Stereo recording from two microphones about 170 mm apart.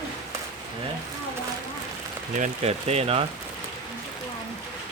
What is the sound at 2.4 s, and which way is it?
Speech, 40° right (ahead or behind).